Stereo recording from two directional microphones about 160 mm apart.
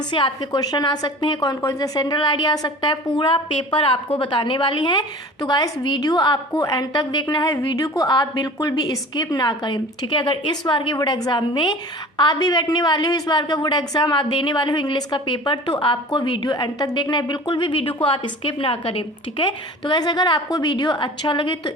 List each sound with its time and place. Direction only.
0.1 s a woman's voice: 30° left (ahead or behind)